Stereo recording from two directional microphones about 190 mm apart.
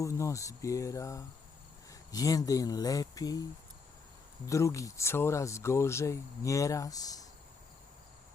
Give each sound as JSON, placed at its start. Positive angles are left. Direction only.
{"t": 0.0, "sound": "speech", "side_deg": 15}
{"t": 4.4, "sound": "speech", "side_deg": 15}